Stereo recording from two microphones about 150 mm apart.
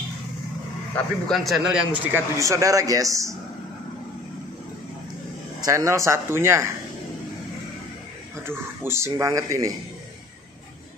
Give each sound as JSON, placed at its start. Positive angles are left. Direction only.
{"t": 0.9, "sound": "a man's voice", "side_deg": 5}
{"t": 5.6, "sound": "speech", "side_deg": -20}
{"t": 8.5, "sound": "speech", "side_deg": -15}